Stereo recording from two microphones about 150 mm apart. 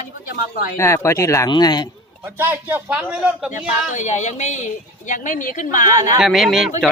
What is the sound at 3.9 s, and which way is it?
A woman's voice, 50° left (ahead or behind).